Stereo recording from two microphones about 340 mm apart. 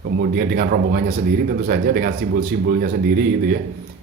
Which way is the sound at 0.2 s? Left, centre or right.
Right.